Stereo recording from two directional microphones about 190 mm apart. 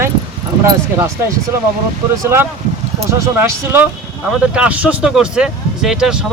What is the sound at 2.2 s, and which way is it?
Speech, 15° right (ahead or behind).